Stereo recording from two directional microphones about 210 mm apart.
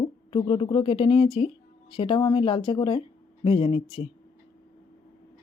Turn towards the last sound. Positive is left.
turn(degrees=25)  # may be behind; listen again after turning